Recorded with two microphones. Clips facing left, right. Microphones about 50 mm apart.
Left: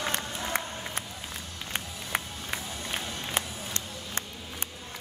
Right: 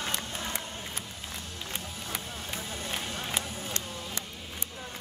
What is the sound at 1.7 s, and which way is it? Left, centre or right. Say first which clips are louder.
Run: left 6 dB; left.